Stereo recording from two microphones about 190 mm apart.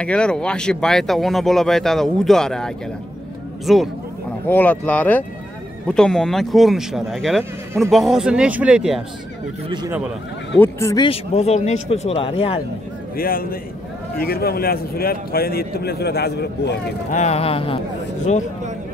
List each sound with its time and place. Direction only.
0.0 s speech: 5° left (ahead or behind)
9.7 s speech: 20° right (ahead or behind)
10.6 s speech: 15° left (ahead or behind)
11.1 s speech: 35° left (ahead or behind)
13.1 s a man's voice: 50° left (ahead or behind)
17.1 s speech: 35° left (ahead or behind)